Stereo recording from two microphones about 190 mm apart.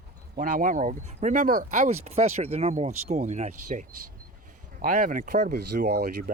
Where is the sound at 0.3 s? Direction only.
45° right (ahead or behind).